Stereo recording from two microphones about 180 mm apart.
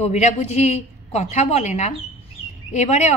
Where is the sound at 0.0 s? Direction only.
40° left (ahead or behind).